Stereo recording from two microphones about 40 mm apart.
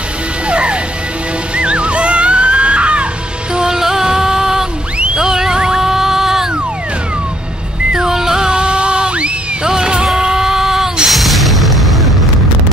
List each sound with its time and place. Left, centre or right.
0.5 s music: right
3.5 s music: centre
5.1 s a sound: centre
7.9 s music: centre
11.1 s music: centre